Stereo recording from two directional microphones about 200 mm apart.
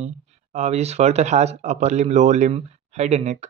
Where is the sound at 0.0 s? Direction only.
35° right (ahead or behind).